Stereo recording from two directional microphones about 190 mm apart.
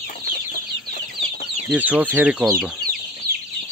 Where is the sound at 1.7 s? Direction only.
10° right (ahead or behind).